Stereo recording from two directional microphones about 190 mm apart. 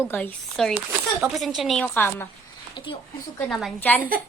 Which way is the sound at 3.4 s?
Centre (ahead or behind).